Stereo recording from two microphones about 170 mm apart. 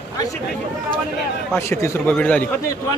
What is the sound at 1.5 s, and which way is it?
Speech, 15° left (ahead or behind).